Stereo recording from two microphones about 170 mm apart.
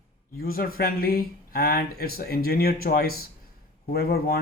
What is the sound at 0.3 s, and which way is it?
Speech, 60° left (ahead or behind).